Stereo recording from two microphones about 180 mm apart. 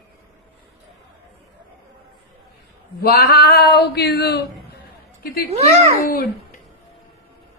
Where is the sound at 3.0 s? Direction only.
60° left (ahead or behind).